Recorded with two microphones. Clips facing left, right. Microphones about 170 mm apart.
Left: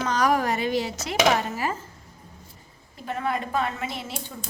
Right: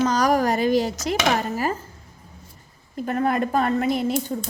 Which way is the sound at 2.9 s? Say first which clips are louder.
Right 6 dB; 50° right (ahead or behind).